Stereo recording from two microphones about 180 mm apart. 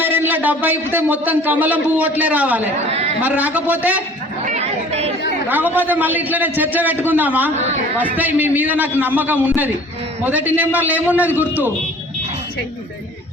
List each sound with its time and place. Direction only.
0.0 s a sound: 10° right (ahead or behind)
0.6 s a man's voice: 10° right (ahead or behind)
4.4 s chatter: 35° right (ahead or behind)
5.5 s a man's voice: 10° right (ahead or behind)